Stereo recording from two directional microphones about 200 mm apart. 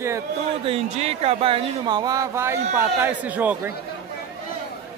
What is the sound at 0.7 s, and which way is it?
Speech, 30° right (ahead or behind).